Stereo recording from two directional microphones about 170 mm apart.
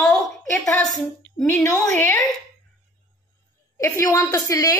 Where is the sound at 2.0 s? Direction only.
20° left (ahead or behind).